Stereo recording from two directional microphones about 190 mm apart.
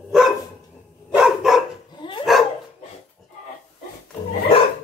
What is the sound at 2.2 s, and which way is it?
Dog, centre (ahead or behind).